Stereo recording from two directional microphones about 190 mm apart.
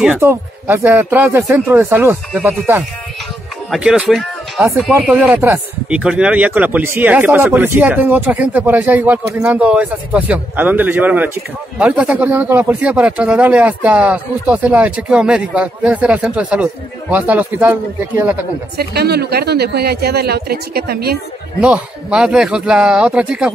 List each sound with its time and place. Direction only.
0.0 s speech: 10° right (ahead or behind)
18.8 s speech: 55° right (ahead or behind)
21.5 s speech: 5° right (ahead or behind)